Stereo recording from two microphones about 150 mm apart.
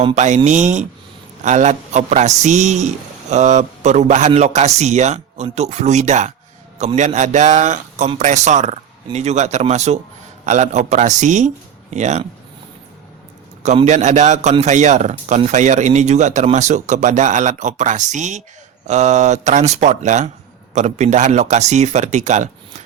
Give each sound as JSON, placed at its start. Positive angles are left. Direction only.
{"t": 0.0, "sound": "speech", "side_deg": -50}
{"t": 13.8, "sound": "speech", "side_deg": -55}